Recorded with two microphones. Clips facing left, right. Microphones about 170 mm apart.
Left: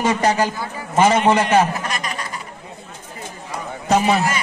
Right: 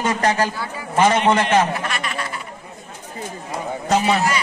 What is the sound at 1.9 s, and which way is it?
Snicker, 40° left (ahead or behind).